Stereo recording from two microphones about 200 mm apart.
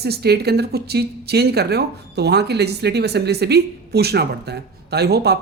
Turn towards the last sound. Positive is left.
turn(degrees=-55)  # may be behind; listen again after turning